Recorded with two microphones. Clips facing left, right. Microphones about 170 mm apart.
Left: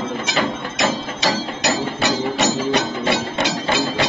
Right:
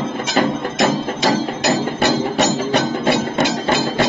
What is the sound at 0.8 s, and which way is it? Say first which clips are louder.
Music: right 3 dB; 50° right (ahead or behind).